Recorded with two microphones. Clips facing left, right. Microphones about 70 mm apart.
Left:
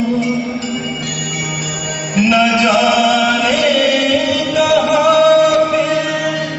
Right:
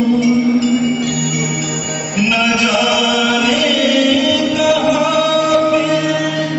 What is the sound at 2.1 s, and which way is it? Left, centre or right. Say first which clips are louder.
Music: left 3 dB; left.